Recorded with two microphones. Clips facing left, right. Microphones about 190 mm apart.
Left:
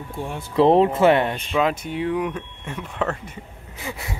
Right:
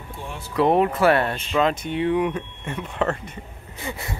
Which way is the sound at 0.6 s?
25° left (ahead or behind).